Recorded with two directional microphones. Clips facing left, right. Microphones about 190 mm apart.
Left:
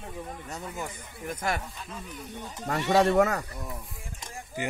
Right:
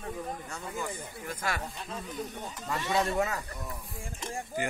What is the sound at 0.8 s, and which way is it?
Speech, 20° left (ahead or behind).